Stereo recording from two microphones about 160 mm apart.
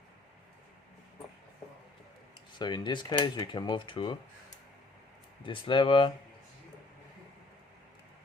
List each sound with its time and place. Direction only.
2.6 s speech: 25° left (ahead or behind)
5.4 s speech: 30° left (ahead or behind)